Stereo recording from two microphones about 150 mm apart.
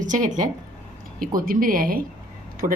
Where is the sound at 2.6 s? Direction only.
60° right (ahead or behind).